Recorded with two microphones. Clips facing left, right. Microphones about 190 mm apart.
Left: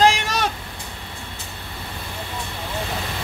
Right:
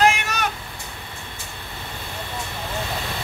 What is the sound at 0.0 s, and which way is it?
Vehicle, 30° left (ahead or behind).